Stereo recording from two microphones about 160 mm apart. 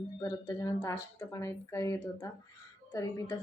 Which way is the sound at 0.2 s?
25° left (ahead or behind).